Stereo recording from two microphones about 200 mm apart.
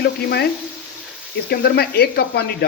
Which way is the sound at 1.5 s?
50° left (ahead or behind).